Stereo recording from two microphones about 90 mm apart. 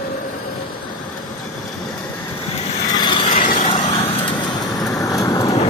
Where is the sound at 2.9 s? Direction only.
60° left (ahead or behind).